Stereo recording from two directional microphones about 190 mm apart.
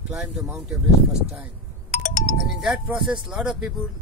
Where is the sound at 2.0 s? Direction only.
40° left (ahead or behind).